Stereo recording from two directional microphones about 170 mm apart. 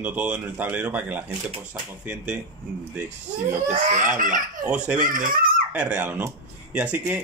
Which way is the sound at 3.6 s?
45° right (ahead or behind).